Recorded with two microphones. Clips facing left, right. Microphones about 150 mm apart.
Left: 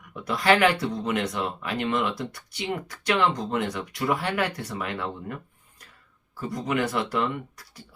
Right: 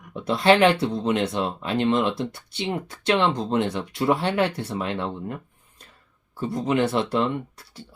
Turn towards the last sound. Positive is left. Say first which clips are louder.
# right 4 dB
turn(degrees=-25)  # may be behind; listen again after turning